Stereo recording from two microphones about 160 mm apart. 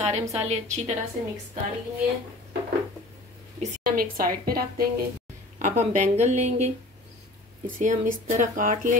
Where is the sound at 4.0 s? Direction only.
65° right (ahead or behind).